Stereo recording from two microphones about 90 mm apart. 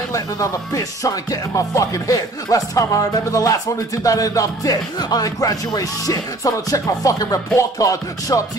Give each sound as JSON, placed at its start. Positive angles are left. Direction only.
{"t": 0.1, "sound": "music", "side_deg": 40}